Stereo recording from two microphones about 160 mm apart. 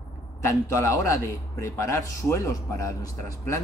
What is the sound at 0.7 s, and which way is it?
A man's voice, 20° left (ahead or behind).